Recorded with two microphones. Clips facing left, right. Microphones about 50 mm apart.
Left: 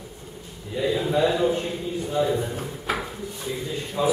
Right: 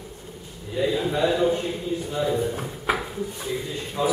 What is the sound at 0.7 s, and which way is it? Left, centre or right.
A man's voice, centre.